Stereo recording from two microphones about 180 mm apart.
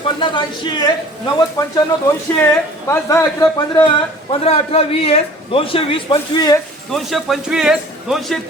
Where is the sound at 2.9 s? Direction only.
15° left (ahead or behind).